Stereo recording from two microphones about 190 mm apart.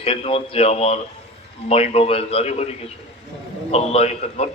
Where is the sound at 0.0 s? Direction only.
30° left (ahead or behind).